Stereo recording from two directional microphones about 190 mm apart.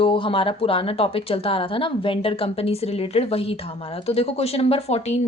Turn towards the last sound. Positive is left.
turn(degrees=35)  # may be behind; listen again after turning